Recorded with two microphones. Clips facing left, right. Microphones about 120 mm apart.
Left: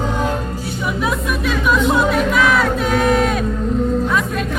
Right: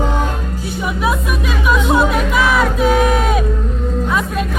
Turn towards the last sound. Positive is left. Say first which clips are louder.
# right 1 dB
turn(degrees=-5)  # may be behind; listen again after turning